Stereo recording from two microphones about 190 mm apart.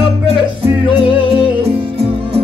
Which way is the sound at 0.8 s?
25° left (ahead or behind).